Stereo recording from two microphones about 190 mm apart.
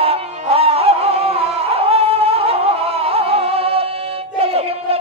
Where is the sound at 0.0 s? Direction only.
30° right (ahead or behind).